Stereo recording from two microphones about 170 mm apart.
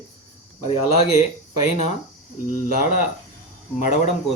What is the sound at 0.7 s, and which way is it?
Speech, 35° left (ahead or behind).